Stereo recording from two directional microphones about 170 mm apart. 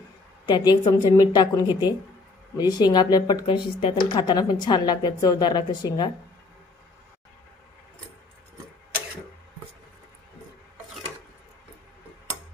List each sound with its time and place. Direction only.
0.5 s speech: 20° left (ahead or behind)